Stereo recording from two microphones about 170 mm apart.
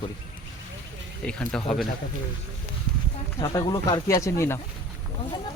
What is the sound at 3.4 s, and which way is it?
Speech, 20° left (ahead or behind).